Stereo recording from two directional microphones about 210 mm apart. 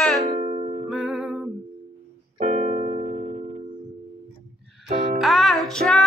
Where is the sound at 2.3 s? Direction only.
40° right (ahead or behind).